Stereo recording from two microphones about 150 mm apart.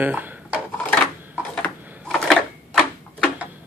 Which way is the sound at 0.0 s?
10° right (ahead or behind).